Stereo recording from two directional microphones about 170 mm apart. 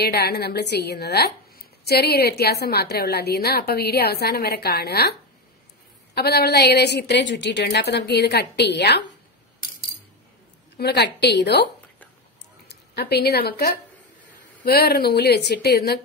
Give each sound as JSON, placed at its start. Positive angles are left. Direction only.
{"t": 0.0, "sound": "speech", "side_deg": 70}
{"t": 6.1, "sound": "a woman's voice", "side_deg": 70}
{"t": 10.8, "sound": "speech", "side_deg": 75}
{"t": 12.6, "sound": "speech", "side_deg": 70}